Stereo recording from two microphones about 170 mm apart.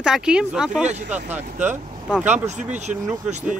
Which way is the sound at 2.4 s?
45° right (ahead or behind).